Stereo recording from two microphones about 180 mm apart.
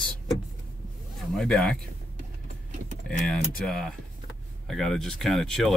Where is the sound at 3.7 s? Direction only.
Centre (ahead or behind).